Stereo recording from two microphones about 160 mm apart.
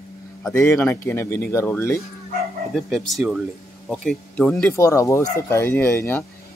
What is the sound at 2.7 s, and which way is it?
A man's voice, centre (ahead or behind).